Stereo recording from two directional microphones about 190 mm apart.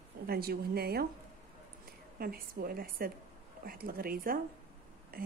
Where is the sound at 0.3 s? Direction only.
55° right (ahead or behind).